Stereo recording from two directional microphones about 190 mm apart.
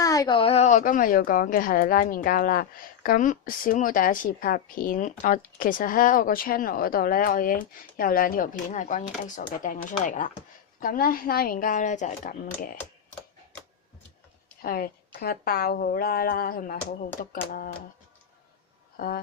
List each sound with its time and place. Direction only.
0.0 s a woman's voice: 20° left (ahead or behind); by 12.6 s 40° left (ahead or behind)
14.6 s a woman's voice: 50° left (ahead or behind)
18.9 s speech: 50° left (ahead or behind)